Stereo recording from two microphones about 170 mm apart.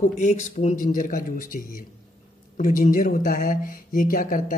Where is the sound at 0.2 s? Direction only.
40° left (ahead or behind).